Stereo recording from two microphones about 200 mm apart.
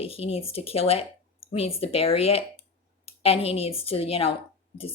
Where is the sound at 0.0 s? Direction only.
30° left (ahead or behind).